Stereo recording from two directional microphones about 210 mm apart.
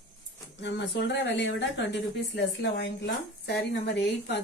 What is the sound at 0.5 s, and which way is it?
A woman's voice, 55° left (ahead or behind).